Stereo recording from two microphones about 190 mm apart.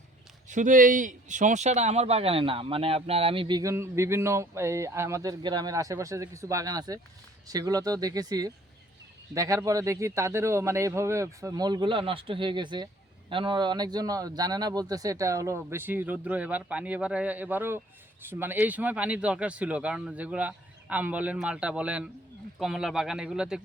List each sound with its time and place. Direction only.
0.4 s speech: 40° right (ahead or behind); by 23.6 s 5° right (ahead or behind)